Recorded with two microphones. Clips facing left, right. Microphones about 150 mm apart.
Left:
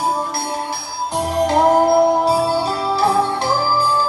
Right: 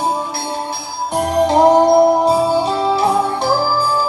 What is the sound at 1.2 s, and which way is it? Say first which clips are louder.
Music: right 3 dB; centre (ahead or behind).